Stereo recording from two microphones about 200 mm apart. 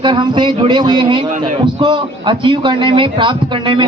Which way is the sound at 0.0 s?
25° right (ahead or behind).